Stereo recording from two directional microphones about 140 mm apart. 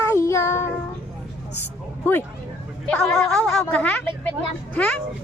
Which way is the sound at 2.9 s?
5° left (ahead or behind).